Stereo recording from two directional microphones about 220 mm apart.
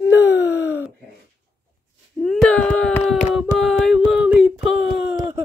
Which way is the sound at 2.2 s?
5° left (ahead or behind).